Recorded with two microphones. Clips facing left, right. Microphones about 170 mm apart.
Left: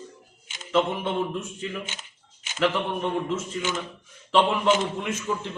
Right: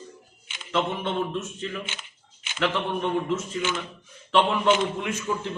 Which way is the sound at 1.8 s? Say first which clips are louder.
Even; 40° left (ahead or behind).